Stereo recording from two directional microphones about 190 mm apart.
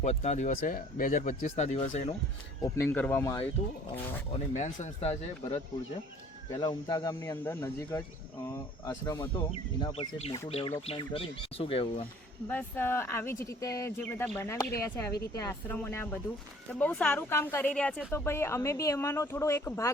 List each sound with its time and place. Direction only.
0.0 s speech: 35° left (ahead or behind)
2.7 s speech: 10° left (ahead or behind)
3.6 s speech: 30° left (ahead or behind)
9.5 s speech: 30° left (ahead or behind)
12.5 s speech: 10° left (ahead or behind)